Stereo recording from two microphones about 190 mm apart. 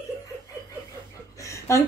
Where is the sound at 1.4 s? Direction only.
15° left (ahead or behind).